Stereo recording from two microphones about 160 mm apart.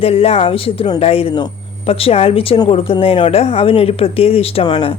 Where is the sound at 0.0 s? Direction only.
35° left (ahead or behind).